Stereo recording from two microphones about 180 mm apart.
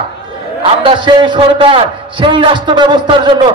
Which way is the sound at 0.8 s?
25° right (ahead or behind).